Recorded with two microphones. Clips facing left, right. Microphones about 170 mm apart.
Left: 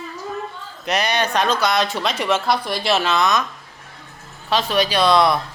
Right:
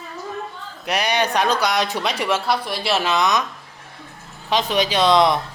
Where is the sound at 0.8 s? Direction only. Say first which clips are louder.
Even; 10° right (ahead or behind).